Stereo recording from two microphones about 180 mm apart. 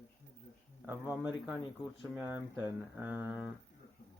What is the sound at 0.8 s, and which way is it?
Speech, 10° right (ahead or behind).